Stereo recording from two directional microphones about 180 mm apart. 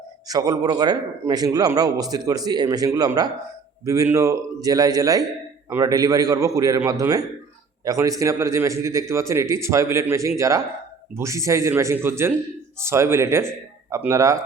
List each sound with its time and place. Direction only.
0.3 s a man's voice: 20° right (ahead or behind)